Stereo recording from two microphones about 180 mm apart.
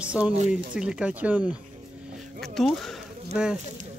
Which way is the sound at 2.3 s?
Centre (ahead or behind).